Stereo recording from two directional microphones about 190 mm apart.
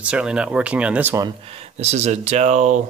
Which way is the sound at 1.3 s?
30° right (ahead or behind).